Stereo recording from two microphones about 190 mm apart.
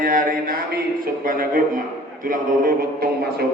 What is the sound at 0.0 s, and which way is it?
Speech, 50° right (ahead or behind).